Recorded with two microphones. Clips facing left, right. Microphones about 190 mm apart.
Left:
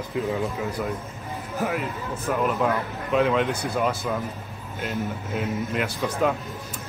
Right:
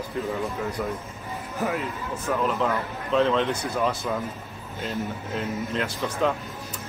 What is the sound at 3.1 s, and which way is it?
Speech, 10° left (ahead or behind).